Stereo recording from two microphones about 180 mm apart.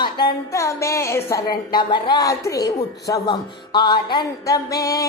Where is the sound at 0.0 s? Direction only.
25° left (ahead or behind).